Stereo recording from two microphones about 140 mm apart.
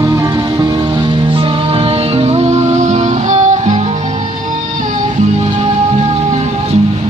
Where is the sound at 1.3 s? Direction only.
40° right (ahead or behind); by 3.8 s 55° right (ahead or behind).